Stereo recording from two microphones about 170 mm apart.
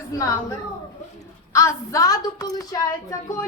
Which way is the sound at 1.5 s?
20° left (ahead or behind).